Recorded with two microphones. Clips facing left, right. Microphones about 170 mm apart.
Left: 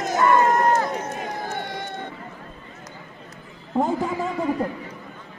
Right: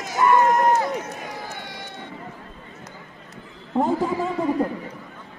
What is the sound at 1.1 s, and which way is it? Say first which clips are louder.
Run: left 5 dB; 50° left (ahead or behind).